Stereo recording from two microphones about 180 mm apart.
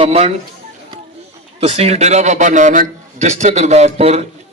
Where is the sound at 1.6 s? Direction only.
35° right (ahead or behind).